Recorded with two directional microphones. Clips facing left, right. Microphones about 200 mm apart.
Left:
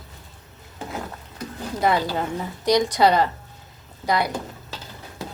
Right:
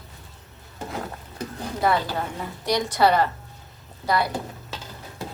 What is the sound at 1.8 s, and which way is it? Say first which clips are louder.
A woman's voice: left 2 dB; 15° left (ahead or behind).